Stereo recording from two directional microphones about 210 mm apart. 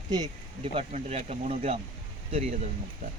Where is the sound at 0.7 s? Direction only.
30° right (ahead or behind).